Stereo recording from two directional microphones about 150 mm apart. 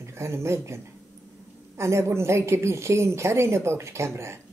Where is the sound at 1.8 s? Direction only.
20° right (ahead or behind).